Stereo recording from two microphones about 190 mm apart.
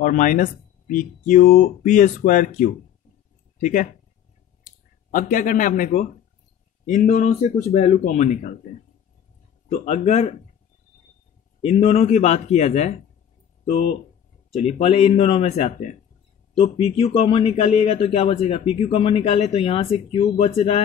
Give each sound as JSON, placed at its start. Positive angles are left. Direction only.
{"t": 0.0, "sound": "speech", "side_deg": 45}
{"t": 5.1, "sound": "a man's voice", "side_deg": 45}
{"t": 9.7, "sound": "a man's voice", "side_deg": 35}
{"t": 11.6, "sound": "a man's voice", "side_deg": 35}
{"t": 14.5, "sound": "a man's voice", "side_deg": 30}